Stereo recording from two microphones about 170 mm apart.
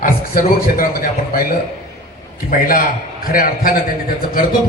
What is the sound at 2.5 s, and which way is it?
A man's voice, 55° left (ahead or behind).